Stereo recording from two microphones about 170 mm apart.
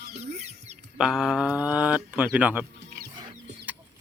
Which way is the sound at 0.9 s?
5° right (ahead or behind).